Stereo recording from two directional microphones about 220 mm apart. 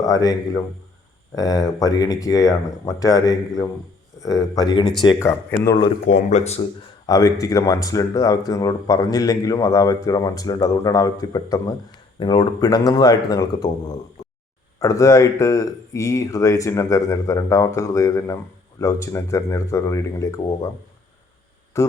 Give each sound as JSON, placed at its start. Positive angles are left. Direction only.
{"t": 0.0, "sound": "speech", "side_deg": 15}
{"t": 6.1, "sound": "speech", "side_deg": 30}
{"t": 7.1, "sound": "speech", "side_deg": 15}
{"t": 21.7, "sound": "speech", "side_deg": 15}